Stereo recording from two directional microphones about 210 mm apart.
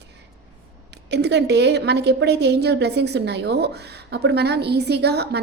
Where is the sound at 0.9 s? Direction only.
55° right (ahead or behind).